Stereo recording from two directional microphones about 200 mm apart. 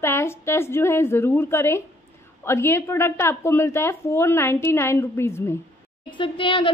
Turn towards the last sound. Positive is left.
turn(degrees=25)  # may be behind; listen again after turning